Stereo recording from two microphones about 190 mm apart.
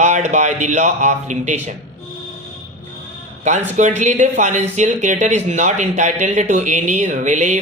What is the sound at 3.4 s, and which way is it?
Speech, 40° right (ahead or behind).